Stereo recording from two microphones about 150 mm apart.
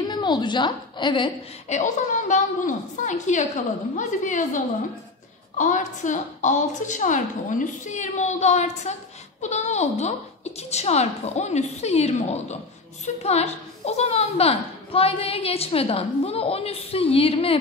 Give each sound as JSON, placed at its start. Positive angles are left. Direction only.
{"t": 0.0, "sound": "a woman's voice", "side_deg": 30}
{"t": 1.7, "sound": "a woman's voice", "side_deg": 55}
{"t": 5.6, "sound": "a woman's voice", "side_deg": 55}